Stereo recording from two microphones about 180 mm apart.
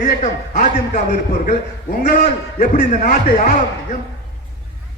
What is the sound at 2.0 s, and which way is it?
A man's voice, 40° left (ahead or behind).